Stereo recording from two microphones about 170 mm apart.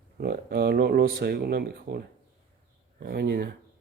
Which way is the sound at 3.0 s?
70° right (ahead or behind).